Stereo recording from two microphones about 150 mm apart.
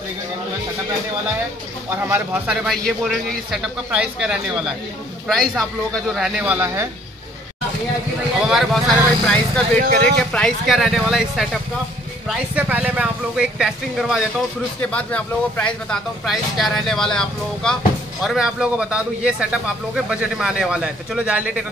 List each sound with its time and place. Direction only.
1.9 s speech: 15° right (ahead or behind)
2.5 s a man's voice: centre (ahead or behind)
8.4 s a man's voice: centre (ahead or behind)
9.8 s speech: 85° right
10.0 s a man's voice: 5° left (ahead or behind)
12.5 s a man's voice: 10° right (ahead or behind)